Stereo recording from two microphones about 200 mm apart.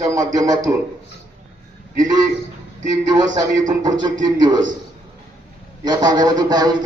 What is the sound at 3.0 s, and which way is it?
A man's voice, 20° right (ahead or behind).